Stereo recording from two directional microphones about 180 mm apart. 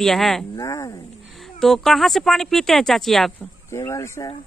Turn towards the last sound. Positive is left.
turn(degrees=15)  # may be behind; listen again after turning